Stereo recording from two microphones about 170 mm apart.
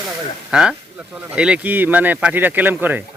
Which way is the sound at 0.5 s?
5° right (ahead or behind).